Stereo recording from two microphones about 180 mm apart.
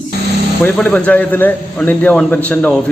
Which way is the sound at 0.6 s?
5° left (ahead or behind).